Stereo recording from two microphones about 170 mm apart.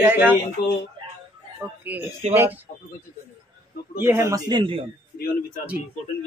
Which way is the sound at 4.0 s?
15° right (ahead or behind).